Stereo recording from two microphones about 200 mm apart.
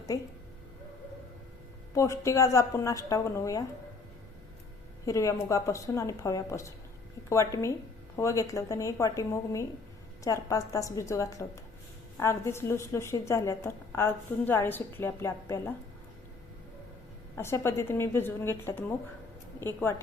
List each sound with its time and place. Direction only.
0.1 s a woman's voice: 15° left (ahead or behind)
2.0 s a woman's voice: 15° left (ahead or behind)
5.0 s a woman's voice: 15° left (ahead or behind)
17.3 s a woman's voice: 15° left (ahead or behind)